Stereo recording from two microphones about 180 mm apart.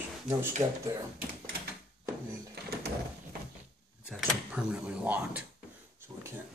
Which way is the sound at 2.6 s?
65° right (ahead or behind).